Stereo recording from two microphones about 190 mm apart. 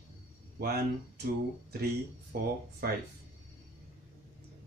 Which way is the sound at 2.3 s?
55° right (ahead or behind).